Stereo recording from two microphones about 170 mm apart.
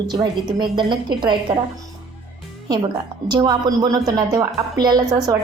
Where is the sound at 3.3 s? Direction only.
25° right (ahead or behind).